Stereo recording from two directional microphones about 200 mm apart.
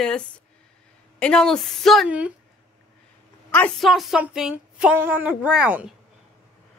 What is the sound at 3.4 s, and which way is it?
A woman's voice, 5° left (ahead or behind).